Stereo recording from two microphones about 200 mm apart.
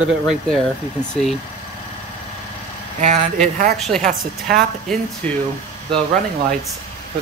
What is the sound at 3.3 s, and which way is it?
Speech, 45° right (ahead or behind).